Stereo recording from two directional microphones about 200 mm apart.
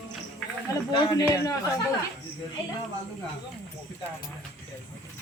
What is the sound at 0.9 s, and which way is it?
Speech, 20° left (ahead or behind).